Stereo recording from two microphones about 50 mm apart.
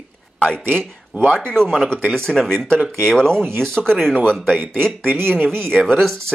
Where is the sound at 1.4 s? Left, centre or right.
Centre.